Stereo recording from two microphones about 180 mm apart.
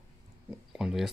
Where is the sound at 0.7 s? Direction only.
5° right (ahead or behind).